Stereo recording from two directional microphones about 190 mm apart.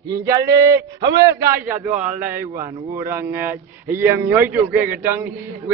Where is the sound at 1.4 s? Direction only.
10° right (ahead or behind).